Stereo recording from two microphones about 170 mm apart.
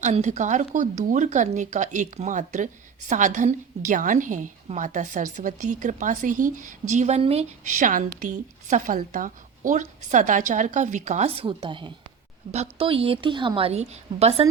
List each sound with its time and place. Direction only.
0.0 s a woman's voice: 45° right (ahead or behind)